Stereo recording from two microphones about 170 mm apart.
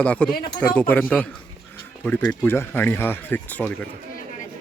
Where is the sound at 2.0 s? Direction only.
5° left (ahead or behind).